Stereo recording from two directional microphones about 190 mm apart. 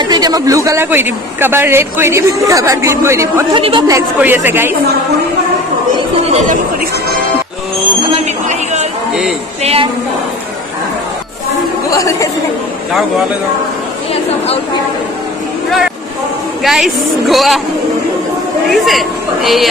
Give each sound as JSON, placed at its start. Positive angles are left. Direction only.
{"t": 0.0, "sound": "a man's voice", "side_deg": -20}
{"t": 3.5, "sound": "a woman's voice", "side_deg": -25}
{"t": 4.2, "sound": "a man's voice", "side_deg": -10}
{"t": 6.2, "sound": "speech", "side_deg": -40}
{"t": 9.6, "sound": "a woman's voice", "side_deg": -30}
{"t": 11.9, "sound": "a woman's voice", "side_deg": 15}
{"t": 16.6, "sound": "speech", "side_deg": 0}
{"t": 18.7, "sound": "speech", "side_deg": 0}